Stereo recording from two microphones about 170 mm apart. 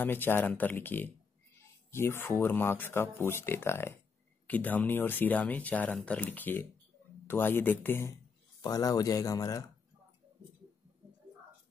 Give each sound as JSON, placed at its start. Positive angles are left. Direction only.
{"t": 0.0, "sound": "speech", "side_deg": 10}